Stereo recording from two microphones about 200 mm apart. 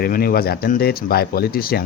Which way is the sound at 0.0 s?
45° left (ahead or behind).